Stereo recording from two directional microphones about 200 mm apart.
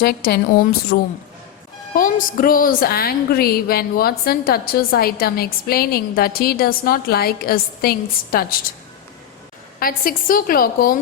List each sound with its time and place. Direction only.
0.0 s a woman's voice: 55° left (ahead or behind)
2.0 s a woman's voice: 40° left (ahead or behind)
9.8 s a woman's voice: 45° left (ahead or behind)